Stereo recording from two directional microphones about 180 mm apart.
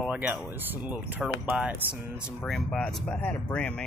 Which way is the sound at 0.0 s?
5° right (ahead or behind).